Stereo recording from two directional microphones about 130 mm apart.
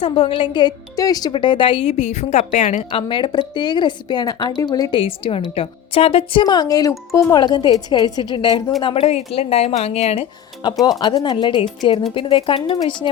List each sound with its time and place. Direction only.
0.0 s speech: 45° left (ahead or behind); by 2.8 s 65° left (ahead or behind)
2.9 s speech: 40° left (ahead or behind)
4.9 s speech: 45° left (ahead or behind)
6.4 s speech: 30° left (ahead or behind)
8.8 s speech: 45° left (ahead or behind)
10.8 s speech: 30° left (ahead or behind)